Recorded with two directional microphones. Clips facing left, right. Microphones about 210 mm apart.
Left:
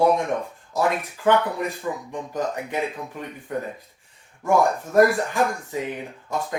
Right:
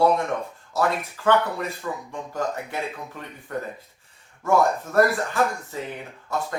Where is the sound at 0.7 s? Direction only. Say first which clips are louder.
Left 1 dB; 15° left (ahead or behind).